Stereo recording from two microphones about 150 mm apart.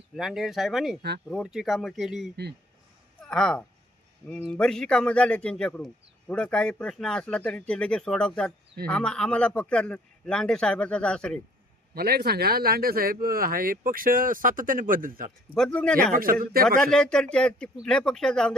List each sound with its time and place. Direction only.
0.2 s speech: centre (ahead or behind)
2.3 s speech: 90° right
3.2 s a sound: 5° left (ahead or behind)
4.4 s a man's voice: 5° left (ahead or behind)
11.9 s speech: 90° right; by 15.5 s 70° right (ahead or behind)
15.5 s a man's voice: 5° left (ahead or behind)
16.1 s speech: 70° right (ahead or behind)
16.8 s speech: 5° left (ahead or behind)